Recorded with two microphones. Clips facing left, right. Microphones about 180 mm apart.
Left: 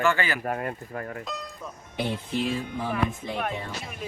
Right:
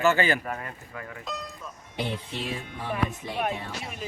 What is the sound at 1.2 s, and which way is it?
Music, centre (ahead or behind).